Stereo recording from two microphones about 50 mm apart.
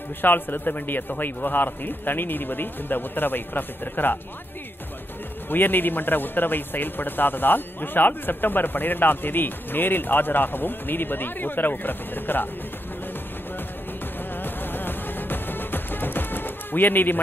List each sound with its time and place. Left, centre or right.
0.2 s a man's voice: left
5.5 s a man's voice: left
14.4 s music: left